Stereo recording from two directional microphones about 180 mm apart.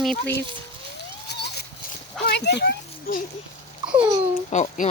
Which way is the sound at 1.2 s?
65° left (ahead or behind).